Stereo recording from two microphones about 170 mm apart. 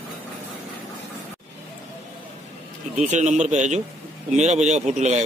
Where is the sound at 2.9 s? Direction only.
40° right (ahead or behind).